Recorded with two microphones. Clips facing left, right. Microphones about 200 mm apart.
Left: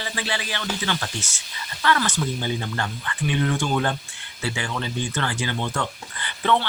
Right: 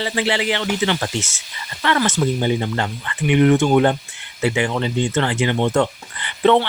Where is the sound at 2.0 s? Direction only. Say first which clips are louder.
Right 7 dB; 25° right (ahead or behind).